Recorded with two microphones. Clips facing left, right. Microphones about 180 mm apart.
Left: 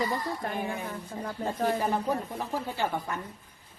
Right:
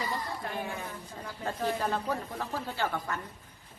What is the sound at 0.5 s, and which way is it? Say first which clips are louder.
Speech: left 3 dB; 15° left (ahead or behind).